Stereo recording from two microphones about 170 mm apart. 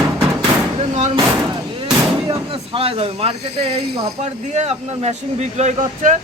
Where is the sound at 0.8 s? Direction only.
40° right (ahead or behind).